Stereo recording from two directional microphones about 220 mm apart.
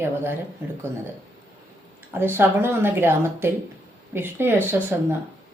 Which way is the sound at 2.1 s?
10° right (ahead or behind).